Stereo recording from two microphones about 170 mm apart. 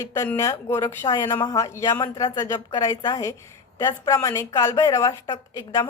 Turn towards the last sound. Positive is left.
turn(degrees=20)  # may be behind; listen again after turning